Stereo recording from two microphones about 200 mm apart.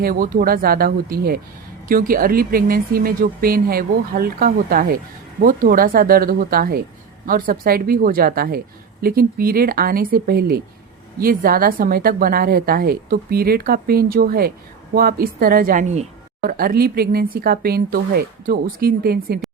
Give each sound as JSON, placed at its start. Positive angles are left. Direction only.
{"t": 0.0, "sound": "a woman's voice", "side_deg": -45}